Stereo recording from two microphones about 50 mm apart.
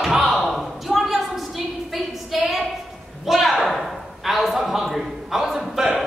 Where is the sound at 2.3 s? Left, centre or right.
Centre.